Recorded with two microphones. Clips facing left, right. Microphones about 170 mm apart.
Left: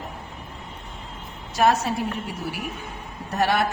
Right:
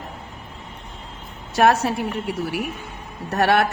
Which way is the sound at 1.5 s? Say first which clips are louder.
Right 3 dB; 65° right (ahead or behind).